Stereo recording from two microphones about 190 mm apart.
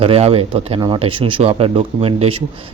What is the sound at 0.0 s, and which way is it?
A man's voice, 30° right (ahead or behind).